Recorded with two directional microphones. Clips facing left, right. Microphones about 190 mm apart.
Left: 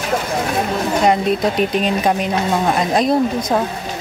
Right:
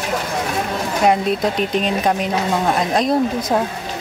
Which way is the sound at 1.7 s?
5° left (ahead or behind).